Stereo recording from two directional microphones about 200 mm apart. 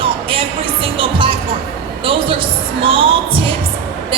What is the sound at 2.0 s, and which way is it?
Speech, 25° right (ahead or behind).